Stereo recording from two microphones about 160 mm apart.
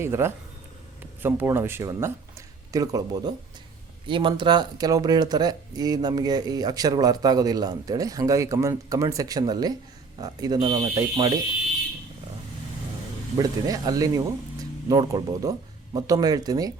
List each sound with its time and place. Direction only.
0.0 s speech: 15° right (ahead or behind)
13.3 s speech: 25° right (ahead or behind)